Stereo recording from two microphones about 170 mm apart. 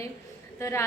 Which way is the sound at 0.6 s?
15° left (ahead or behind).